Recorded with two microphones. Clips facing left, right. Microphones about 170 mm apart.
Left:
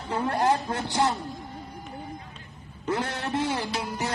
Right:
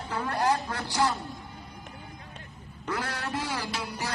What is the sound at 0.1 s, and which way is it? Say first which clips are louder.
Music: left 3 dB; 25° left (ahead or behind).